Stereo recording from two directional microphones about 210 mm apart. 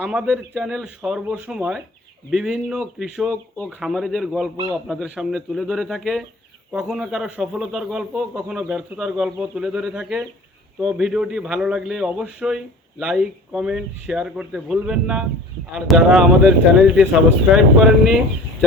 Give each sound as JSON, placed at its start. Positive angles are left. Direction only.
{"t": 0.0, "sound": "a man's voice", "side_deg": -5}